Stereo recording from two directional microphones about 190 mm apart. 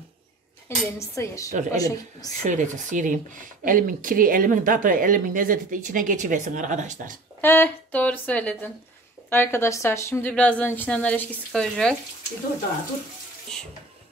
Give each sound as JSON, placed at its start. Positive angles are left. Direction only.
{"t": 0.7, "sound": "a woman's voice", "side_deg": 15}
{"t": 2.4, "sound": "speech", "side_deg": -40}
{"t": 7.4, "sound": "a woman's voice", "side_deg": 10}